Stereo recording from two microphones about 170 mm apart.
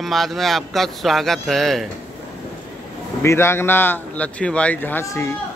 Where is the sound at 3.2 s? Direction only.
15° left (ahead or behind).